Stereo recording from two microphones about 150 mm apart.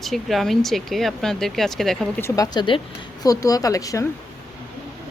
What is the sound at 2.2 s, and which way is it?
Speech, 25° left (ahead or behind).